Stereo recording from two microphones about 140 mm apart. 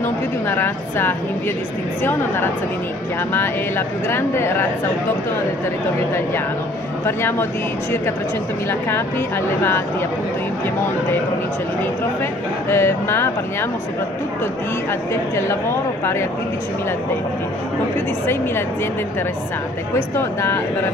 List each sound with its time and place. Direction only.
0.0 s a woman's voice: 15° left (ahead or behind)
7.1 s speech: 15° left (ahead or behind)
9.6 s speech: 15° left (ahead or behind)
12.6 s speech: 15° left (ahead or behind)
20.2 s speech: 15° left (ahead or behind)